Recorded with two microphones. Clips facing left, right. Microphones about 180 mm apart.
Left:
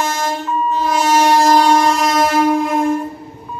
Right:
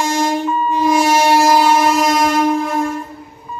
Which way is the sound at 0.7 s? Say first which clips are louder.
Right 2 dB; 10° right (ahead or behind).